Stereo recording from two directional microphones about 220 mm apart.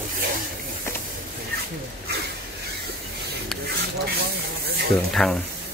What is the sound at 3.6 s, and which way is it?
Rub, 45° right (ahead or behind).